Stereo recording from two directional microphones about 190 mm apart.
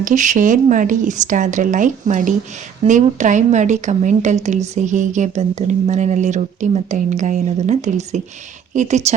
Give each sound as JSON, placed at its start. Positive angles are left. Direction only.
{"t": 0.0, "sound": "speech", "side_deg": -40}